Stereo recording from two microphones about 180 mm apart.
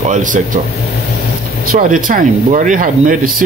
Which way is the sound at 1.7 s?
50° right (ahead or behind).